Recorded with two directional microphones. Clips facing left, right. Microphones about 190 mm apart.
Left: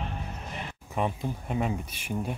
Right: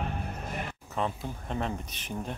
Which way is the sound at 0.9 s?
10° left (ahead or behind).